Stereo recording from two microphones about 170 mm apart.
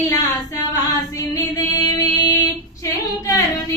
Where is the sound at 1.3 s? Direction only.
20° left (ahead or behind).